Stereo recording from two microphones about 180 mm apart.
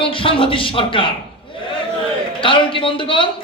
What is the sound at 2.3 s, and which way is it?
Speech, 30° left (ahead or behind).